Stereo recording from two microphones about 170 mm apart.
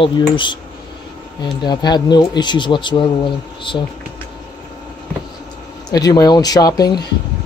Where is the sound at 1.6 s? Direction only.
25° left (ahead or behind).